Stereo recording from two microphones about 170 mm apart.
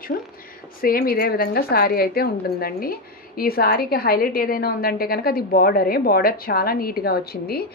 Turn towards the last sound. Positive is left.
turn(degrees=65)  # may be behind; listen again after turning